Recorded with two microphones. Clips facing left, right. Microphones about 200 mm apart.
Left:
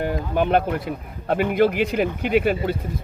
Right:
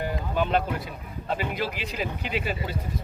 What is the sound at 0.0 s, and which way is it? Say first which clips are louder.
Speech: left 5 dB; 55° left (ahead or behind).